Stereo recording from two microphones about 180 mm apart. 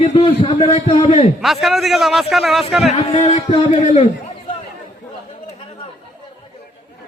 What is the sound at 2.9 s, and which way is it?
A man's voice, 30° left (ahead or behind).